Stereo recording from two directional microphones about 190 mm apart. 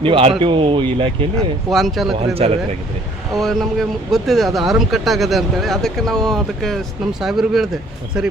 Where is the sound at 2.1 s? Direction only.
30° right (ahead or behind).